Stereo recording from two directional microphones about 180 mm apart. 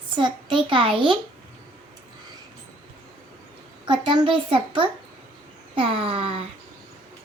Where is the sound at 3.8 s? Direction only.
25° right (ahead or behind).